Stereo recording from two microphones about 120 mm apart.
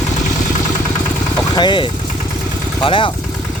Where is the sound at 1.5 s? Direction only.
40° left (ahead or behind).